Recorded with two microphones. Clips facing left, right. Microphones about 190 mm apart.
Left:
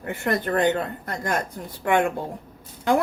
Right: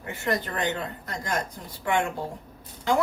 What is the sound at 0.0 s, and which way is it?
Speech, 55° left (ahead or behind).